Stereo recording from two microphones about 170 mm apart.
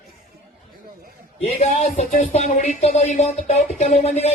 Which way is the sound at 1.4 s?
40° left (ahead or behind).